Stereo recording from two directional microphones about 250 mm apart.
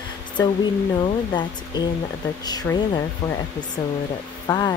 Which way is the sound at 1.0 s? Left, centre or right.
Centre.